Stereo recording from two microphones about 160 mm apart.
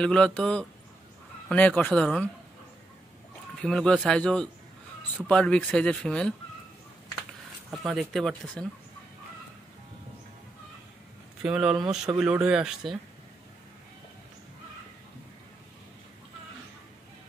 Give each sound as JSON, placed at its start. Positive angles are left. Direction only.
{"t": 0.0, "sound": "speech", "side_deg": 5}
{"t": 3.6, "sound": "speech", "side_deg": 5}
{"t": 7.7, "sound": "speech", "side_deg": 0}
{"t": 11.4, "sound": "speech", "side_deg": -5}